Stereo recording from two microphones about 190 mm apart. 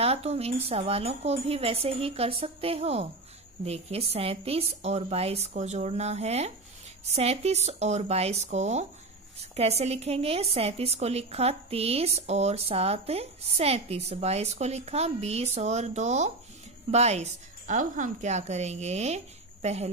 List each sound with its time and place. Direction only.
0.0 s speech: 35° right (ahead or behind)